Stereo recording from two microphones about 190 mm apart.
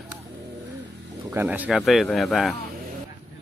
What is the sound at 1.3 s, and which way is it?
Speech, 10° right (ahead or behind).